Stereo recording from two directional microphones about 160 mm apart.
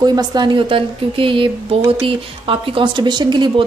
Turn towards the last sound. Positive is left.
turn(degrees=-30)  # may be behind; listen again after turning